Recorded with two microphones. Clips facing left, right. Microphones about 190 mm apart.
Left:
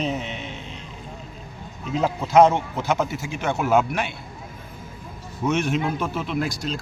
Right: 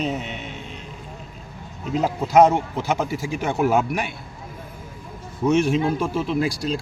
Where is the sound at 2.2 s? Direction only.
35° right (ahead or behind).